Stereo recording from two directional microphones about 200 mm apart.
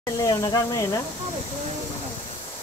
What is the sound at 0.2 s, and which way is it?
Speech, 20° left (ahead or behind).